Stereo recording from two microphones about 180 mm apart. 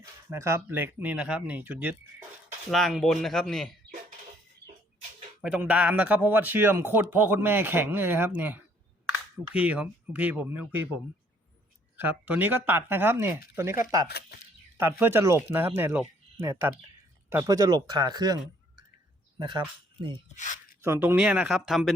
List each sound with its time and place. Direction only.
0.0 s a man's voice: 15° right (ahead or behind)
2.6 s speech: centre (ahead or behind)
5.4 s a man's voice: 5° right (ahead or behind)
11.9 s a man's voice: 10° right (ahead or behind)
14.1 s speech: 65° left (ahead or behind)
14.8 s a man's voice: 10° right (ahead or behind)
19.4 s speech: 25° right (ahead or behind)
20.3 s speech: 45° left (ahead or behind)
20.8 s speech: 15° right (ahead or behind)